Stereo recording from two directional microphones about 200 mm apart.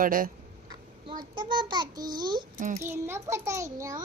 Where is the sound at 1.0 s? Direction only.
25° right (ahead or behind).